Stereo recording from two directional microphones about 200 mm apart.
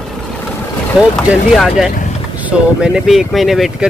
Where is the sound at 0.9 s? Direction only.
Centre (ahead or behind).